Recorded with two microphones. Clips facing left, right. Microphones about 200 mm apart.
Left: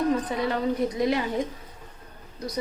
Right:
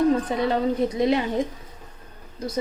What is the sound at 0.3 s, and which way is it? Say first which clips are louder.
Speech: right 3 dB; 25° right (ahead or behind).